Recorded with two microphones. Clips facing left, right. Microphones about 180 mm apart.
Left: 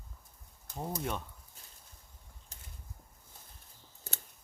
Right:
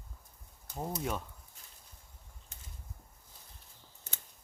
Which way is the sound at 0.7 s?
5° right (ahead or behind).